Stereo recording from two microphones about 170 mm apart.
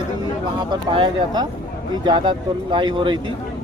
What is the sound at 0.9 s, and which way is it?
Speech, 25° right (ahead or behind).